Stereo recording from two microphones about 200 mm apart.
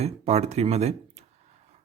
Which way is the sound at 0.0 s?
35° right (ahead or behind).